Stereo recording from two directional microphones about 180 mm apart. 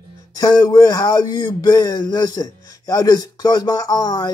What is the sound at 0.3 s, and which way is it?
Speech, 20° left (ahead or behind).